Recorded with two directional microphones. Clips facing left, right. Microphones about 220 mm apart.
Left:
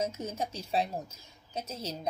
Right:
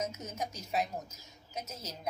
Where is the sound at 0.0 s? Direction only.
30° left (ahead or behind).